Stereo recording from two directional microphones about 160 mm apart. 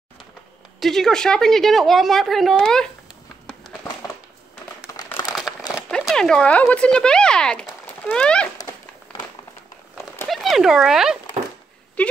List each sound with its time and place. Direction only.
0.7 s a woman's voice: centre (ahead or behind)
4.8 s crumpling: 20° left (ahead or behind)
5.2 s crumpling: centre (ahead or behind)
5.9 s speech: 5° left (ahead or behind)
10.2 s speech: centre (ahead or behind)
12.0 s speech: 10° left (ahead or behind)